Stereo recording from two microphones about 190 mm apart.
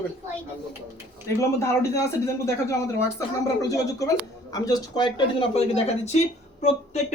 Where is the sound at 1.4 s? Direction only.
15° left (ahead or behind).